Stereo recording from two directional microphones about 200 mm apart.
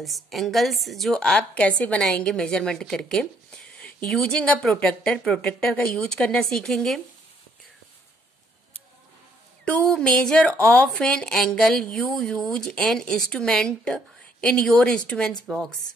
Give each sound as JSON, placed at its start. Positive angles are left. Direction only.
{"t": 0.0, "sound": "a woman's voice", "side_deg": 0}
{"t": 9.7, "sound": "a woman's voice", "side_deg": 5}